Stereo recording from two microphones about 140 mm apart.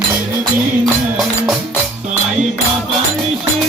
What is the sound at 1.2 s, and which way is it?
Music, centre (ahead or behind).